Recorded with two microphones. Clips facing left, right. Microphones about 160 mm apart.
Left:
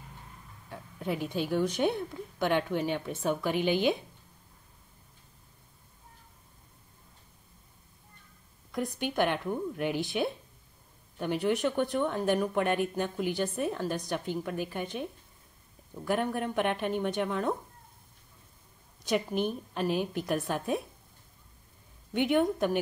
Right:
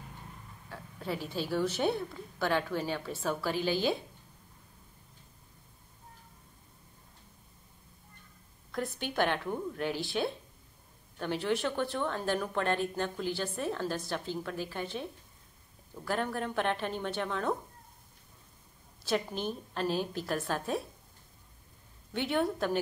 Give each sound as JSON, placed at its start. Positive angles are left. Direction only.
{"t": 0.9, "sound": "a sound", "side_deg": 15}
{"t": 1.3, "sound": "a woman's voice", "side_deg": 15}
{"t": 9.1, "sound": "speech", "side_deg": 10}
{"t": 19.0, "sound": "speech", "side_deg": 15}
{"t": 22.1, "sound": "speech", "side_deg": 15}